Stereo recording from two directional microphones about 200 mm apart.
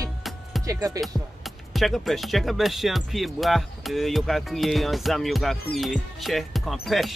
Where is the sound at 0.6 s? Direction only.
15° right (ahead or behind).